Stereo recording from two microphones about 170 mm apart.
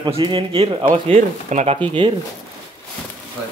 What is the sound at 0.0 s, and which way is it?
Speech, 30° right (ahead or behind).